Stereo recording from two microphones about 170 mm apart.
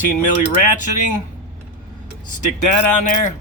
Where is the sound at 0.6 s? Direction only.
50° left (ahead or behind).